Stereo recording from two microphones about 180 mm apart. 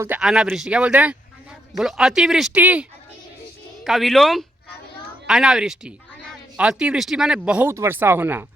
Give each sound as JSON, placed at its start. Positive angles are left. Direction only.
{"t": 0.2, "sound": "speech", "side_deg": 0}
{"t": 3.8, "sound": "speech", "side_deg": 0}